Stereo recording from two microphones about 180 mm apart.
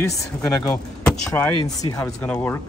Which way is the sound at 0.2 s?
20° left (ahead or behind).